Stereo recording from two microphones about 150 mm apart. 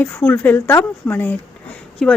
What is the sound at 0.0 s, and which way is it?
A woman's voice, 10° left (ahead or behind).